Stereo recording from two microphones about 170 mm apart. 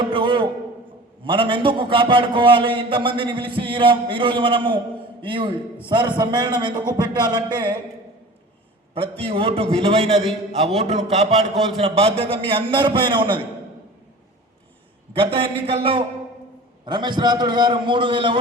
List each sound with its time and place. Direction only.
0.0 s a sound: 30° right (ahead or behind)
1.2 s a man's voice: 30° right (ahead or behind)
9.0 s a man's voice: 30° right (ahead or behind)
15.1 s a man's voice: 30° right (ahead or behind)